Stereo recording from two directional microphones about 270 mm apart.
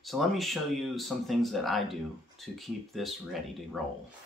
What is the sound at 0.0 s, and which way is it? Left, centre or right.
Speech, centre.